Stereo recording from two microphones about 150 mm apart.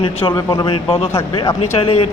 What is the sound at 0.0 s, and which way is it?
Speech, 40° left (ahead or behind).